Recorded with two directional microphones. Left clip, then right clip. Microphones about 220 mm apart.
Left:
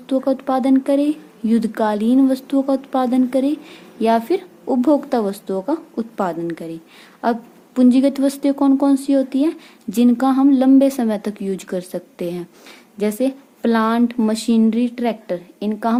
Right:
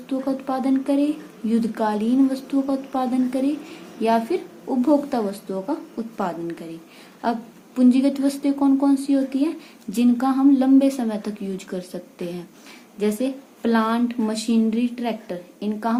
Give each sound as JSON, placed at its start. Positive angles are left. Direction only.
{"t": 0.1, "sound": "speech", "side_deg": 45}